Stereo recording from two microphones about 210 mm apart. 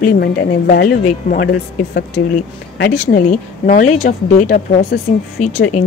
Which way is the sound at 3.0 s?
35° left (ahead or behind).